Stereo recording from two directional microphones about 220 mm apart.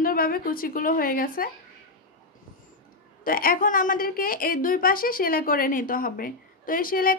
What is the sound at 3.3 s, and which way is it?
A woman's voice, 40° left (ahead or behind).